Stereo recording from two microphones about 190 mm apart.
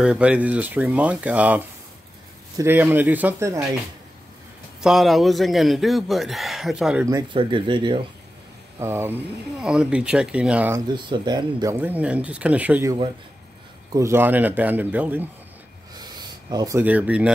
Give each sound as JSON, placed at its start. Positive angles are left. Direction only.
{"t": 0.0, "sound": "speech", "side_deg": -5}
{"t": 4.8, "sound": "a man's voice", "side_deg": 0}
{"t": 7.1, "sound": "speech", "side_deg": -20}
{"t": 8.7, "sound": "a man's voice", "side_deg": -15}
{"t": 11.0, "sound": "speech", "side_deg": -25}
{"t": 11.8, "sound": "speech", "side_deg": -10}
{"t": 13.9, "sound": "speech", "side_deg": -15}
{"t": 15.9, "sound": "a sound", "side_deg": -20}